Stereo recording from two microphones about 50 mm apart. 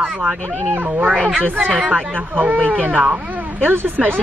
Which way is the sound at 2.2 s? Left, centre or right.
Right.